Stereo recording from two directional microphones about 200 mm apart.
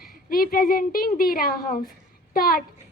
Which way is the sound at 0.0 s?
45° left (ahead or behind).